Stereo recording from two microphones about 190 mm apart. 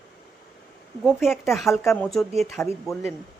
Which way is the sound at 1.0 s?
Centre (ahead or behind).